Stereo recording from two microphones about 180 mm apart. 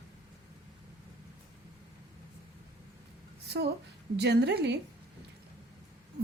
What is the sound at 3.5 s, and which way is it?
A woman's voice, 65° right (ahead or behind).